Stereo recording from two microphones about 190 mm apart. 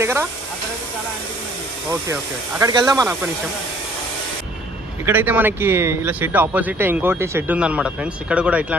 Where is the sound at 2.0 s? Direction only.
15° right (ahead or behind).